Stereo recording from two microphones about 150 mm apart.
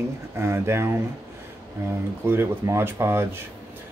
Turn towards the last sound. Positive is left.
turn(degrees=-15)  # may be behind; listen again after turning